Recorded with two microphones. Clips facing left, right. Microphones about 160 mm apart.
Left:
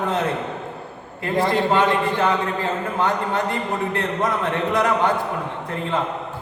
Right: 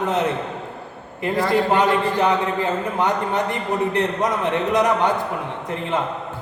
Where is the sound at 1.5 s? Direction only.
20° right (ahead or behind).